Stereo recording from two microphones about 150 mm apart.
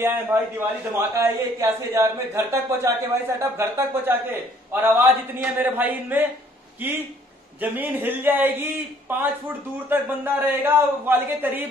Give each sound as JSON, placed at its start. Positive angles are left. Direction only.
{"t": 0.0, "sound": "a man's voice", "side_deg": -15}